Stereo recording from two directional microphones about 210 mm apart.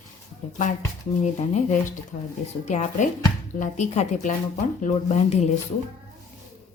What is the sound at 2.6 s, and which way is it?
A woman's voice, 35° left (ahead or behind).